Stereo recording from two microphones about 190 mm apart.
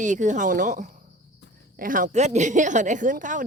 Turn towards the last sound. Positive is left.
turn(degrees=-45)  # may be behind; listen again after turning